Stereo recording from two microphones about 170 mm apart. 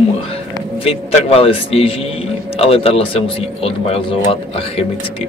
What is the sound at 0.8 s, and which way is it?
A man's voice, 35° left (ahead or behind).